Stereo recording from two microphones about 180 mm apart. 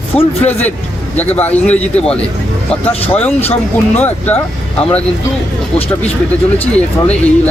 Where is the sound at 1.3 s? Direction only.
5° left (ahead or behind).